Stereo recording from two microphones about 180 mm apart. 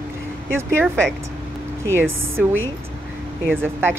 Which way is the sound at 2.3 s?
90° right.